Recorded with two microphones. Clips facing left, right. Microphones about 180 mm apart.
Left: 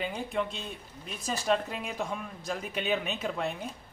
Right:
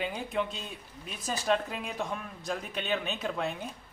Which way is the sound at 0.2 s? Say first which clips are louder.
Even; centre (ahead or behind).